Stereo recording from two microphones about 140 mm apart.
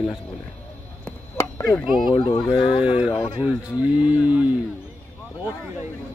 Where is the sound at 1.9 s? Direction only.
Centre (ahead or behind).